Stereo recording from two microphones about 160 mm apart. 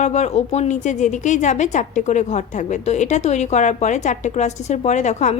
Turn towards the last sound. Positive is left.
turn(degrees=45)  # may be behind; listen again after turning